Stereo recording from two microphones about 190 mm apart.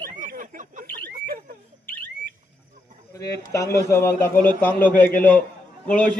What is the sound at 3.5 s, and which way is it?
Speech, 15° left (ahead or behind).